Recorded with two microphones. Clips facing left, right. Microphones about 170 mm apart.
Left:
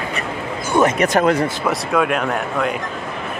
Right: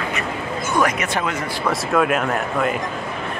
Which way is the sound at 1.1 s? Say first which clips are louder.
Left 8 dB; 40° left (ahead or behind).